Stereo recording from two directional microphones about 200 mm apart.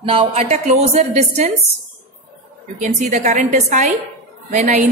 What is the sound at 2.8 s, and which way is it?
A woman's voice, 40° right (ahead or behind).